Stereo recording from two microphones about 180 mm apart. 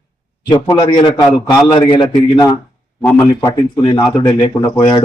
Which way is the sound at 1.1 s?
15° left (ahead or behind).